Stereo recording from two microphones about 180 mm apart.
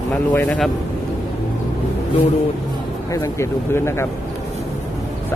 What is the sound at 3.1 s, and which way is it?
Speech, 15° left (ahead or behind).